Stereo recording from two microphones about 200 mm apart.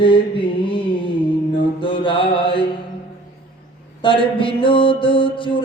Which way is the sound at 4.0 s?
25° left (ahead or behind).